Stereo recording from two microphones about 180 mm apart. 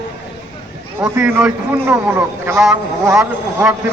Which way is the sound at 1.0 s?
20° right (ahead or behind).